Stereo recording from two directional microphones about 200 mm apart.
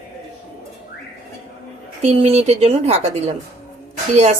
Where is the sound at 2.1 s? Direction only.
30° right (ahead or behind).